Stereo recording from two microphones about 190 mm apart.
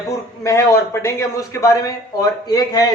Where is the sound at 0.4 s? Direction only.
15° left (ahead or behind).